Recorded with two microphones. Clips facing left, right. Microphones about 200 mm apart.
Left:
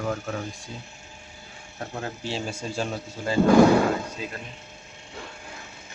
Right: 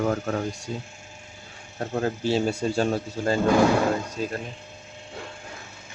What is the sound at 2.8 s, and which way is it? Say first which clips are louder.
Speech: right 6 dB; 45° right (ahead or behind).